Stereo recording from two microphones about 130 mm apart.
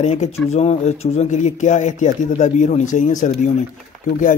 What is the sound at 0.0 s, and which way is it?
Speech, 60° left (ahead or behind).